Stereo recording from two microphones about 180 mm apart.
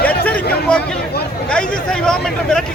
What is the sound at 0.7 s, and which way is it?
Speech, 5° left (ahead or behind).